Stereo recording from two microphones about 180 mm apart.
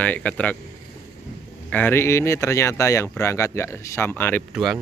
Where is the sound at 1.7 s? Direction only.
10° left (ahead or behind).